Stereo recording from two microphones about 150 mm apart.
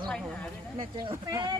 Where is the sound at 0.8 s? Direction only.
35° right (ahead or behind).